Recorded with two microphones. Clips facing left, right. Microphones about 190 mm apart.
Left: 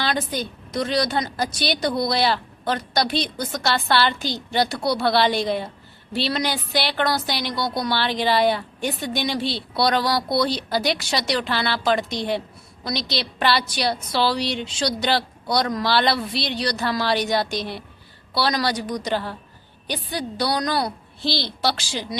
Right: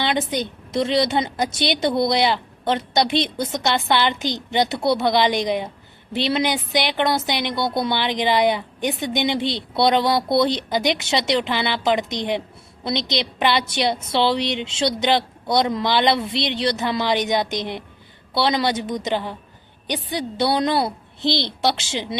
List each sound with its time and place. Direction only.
0.0 s a woman's voice: 20° right (ahead or behind)